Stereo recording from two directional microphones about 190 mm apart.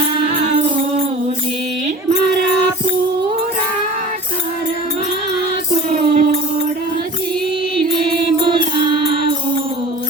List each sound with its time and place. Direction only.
5.9 s music: 40° right (ahead or behind)